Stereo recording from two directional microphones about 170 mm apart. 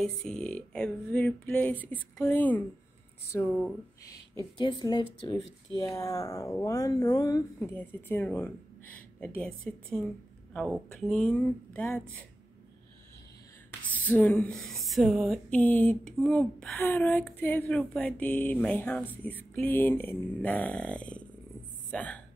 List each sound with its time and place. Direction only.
0.0 s speech: 5° left (ahead or behind); by 7.7 s 20° left (ahead or behind)
7.7 s speech: 10° left (ahead or behind)
13.7 s speech: 10° left (ahead or behind)